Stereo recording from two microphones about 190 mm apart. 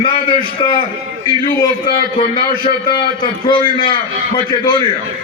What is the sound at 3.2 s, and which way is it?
A man's voice, 25° left (ahead or behind).